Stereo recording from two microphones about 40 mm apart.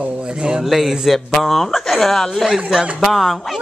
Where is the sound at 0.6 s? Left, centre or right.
Centre.